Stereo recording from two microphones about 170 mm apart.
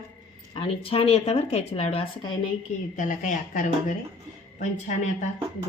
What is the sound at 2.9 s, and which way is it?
Speech, 50° left (ahead or behind).